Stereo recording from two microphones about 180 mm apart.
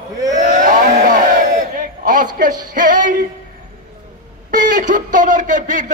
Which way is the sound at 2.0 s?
45° right (ahead or behind).